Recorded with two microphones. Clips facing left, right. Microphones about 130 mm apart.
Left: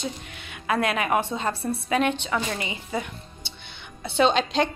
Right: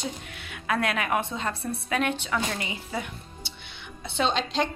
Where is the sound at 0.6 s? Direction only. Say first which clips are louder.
Left 3 dB; 5° left (ahead or behind).